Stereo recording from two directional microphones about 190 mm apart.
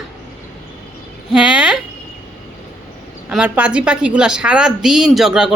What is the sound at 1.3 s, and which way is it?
Speech, 5° right (ahead or behind).